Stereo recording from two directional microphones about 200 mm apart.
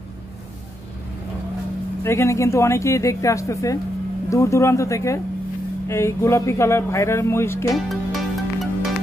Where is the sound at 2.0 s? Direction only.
15° left (ahead or behind).